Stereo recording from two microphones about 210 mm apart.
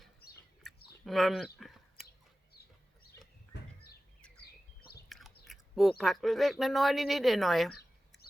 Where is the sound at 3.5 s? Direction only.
50° left (ahead or behind).